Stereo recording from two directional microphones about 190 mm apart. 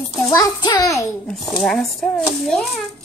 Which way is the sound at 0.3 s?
20° left (ahead or behind).